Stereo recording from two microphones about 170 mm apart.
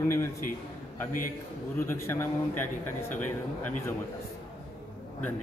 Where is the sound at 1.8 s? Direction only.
15° left (ahead or behind).